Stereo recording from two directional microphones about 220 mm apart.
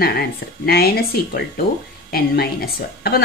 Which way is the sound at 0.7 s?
45° left (ahead or behind).